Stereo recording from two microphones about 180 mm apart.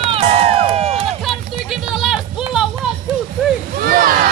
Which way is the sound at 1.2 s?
Centre (ahead or behind).